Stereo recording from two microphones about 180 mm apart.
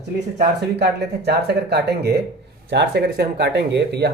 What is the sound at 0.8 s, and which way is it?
Speech, 65° right (ahead or behind).